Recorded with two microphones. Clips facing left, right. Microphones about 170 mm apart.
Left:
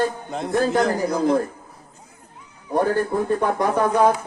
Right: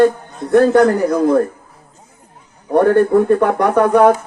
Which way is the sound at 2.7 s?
65° right (ahead or behind).